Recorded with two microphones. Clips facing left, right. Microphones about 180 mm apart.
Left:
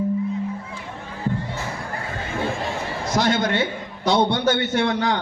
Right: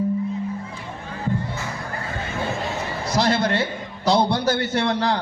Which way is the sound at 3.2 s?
35° right (ahead or behind).